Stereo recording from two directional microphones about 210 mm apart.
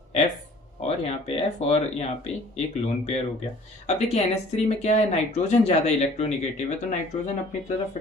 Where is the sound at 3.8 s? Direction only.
30° left (ahead or behind).